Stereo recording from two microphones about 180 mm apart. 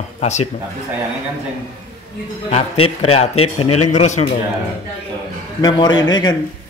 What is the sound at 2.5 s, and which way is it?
A man's voice, 35° left (ahead or behind).